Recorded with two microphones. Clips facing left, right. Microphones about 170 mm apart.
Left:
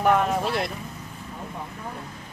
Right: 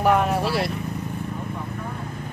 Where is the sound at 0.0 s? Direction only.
5° right (ahead or behind).